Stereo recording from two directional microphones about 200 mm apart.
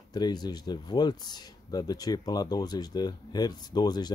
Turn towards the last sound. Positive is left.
turn(degrees=20)  # may be behind; listen again after turning